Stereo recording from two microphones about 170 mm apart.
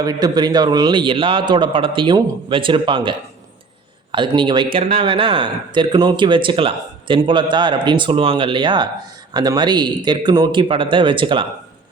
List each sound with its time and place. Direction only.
0.0 s speech: 20° right (ahead or behind)